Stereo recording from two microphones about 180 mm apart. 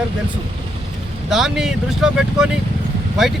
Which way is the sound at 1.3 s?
Centre (ahead or behind).